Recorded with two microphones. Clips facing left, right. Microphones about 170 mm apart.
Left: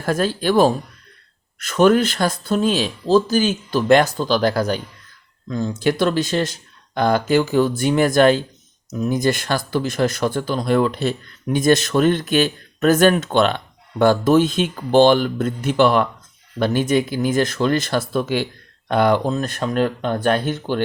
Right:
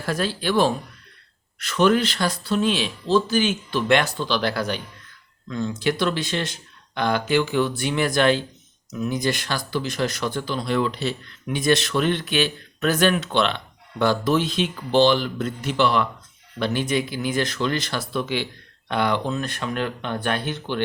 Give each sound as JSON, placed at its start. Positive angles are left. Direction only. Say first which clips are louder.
{"t": 0.0, "sound": "speech", "louder": "left 5 dB", "side_deg": 45}